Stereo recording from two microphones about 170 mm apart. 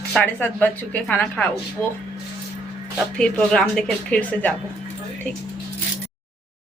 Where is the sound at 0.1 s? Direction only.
10° left (ahead or behind).